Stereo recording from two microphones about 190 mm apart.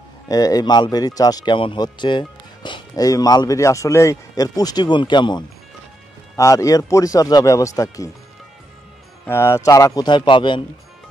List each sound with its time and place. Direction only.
0.3 s speech: 20° left (ahead or behind)
9.2 s speech: 15° left (ahead or behind)